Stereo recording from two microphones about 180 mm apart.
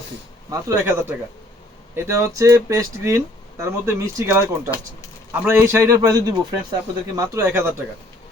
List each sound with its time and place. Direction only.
0.5 s speech: 15° right (ahead or behind)